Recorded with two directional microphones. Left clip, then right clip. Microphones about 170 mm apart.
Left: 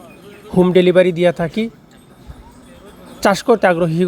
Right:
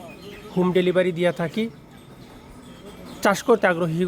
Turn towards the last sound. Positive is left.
turn(degrees=25)  # may be behind; listen again after turning